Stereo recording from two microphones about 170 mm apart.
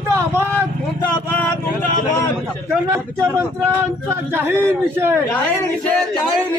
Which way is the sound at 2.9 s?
15° right (ahead or behind).